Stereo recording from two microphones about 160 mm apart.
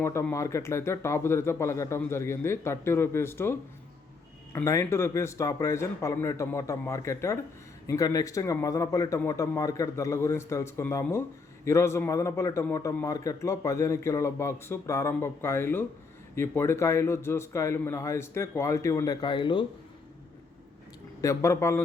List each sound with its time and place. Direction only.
0.0 s a man's voice: 15° left (ahead or behind)
21.2 s speech: 20° left (ahead or behind)